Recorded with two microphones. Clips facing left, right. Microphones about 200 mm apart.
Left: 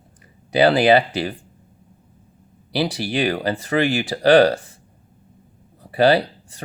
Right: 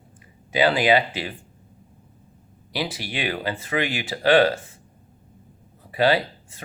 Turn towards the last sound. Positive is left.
turn(degrees=35)  # may be behind; listen again after turning